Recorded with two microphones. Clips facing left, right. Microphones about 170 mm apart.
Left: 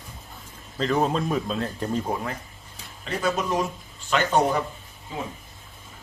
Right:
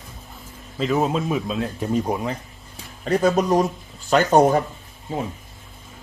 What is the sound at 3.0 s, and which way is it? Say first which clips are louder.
Speech: right 7 dB; 40° right (ahead or behind).